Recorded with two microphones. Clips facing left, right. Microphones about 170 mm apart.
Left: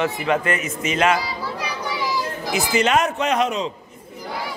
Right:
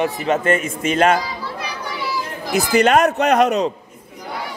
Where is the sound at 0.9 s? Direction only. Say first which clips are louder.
Right 4 dB; 45° right (ahead or behind).